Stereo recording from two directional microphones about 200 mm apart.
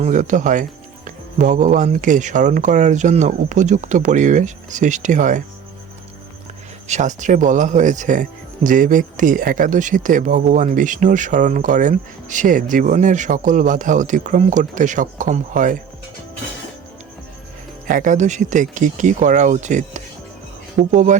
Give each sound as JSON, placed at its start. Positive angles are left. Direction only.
{"t": 0.0, "sound": "speech", "side_deg": -40}
{"t": 6.8, "sound": "speech", "side_deg": -35}
{"t": 17.8, "sound": "speech", "side_deg": -40}